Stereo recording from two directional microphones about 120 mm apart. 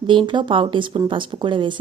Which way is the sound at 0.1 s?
45° right (ahead or behind).